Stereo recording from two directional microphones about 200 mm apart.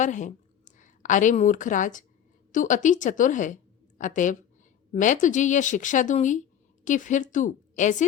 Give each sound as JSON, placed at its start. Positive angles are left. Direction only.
{"t": 0.0, "sound": "a woman's voice", "side_deg": 40}